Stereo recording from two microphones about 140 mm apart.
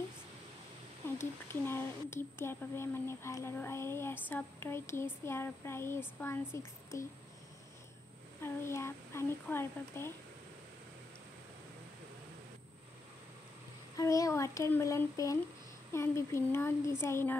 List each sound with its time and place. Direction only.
1.1 s speech: 15° left (ahead or behind)
8.4 s speech: 20° left (ahead or behind)
13.9 s speech: 25° left (ahead or behind)